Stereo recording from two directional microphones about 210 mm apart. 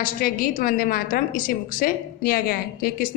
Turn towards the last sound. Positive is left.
turn(degrees=45)  # may be behind; listen again after turning